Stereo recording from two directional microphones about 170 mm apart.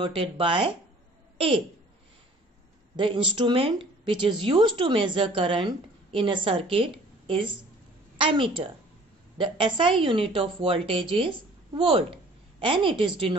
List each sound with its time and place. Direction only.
0.0 s a woman's voice: 30° right (ahead or behind)
3.0 s a woman's voice: 30° right (ahead or behind)